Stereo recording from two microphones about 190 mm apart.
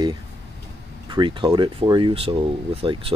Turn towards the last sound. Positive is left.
turn(degrees=-30)  # may be behind; listen again after turning